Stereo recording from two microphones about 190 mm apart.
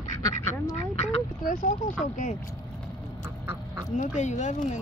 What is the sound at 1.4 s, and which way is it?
Speech, 40° left (ahead or behind).